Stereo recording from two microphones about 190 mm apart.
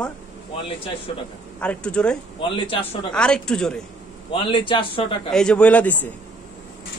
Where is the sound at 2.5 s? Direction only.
25° left (ahead or behind).